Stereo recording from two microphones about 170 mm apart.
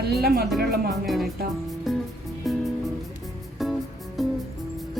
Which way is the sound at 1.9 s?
Centre (ahead or behind).